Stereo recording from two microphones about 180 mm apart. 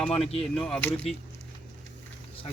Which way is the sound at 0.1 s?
35° left (ahead or behind).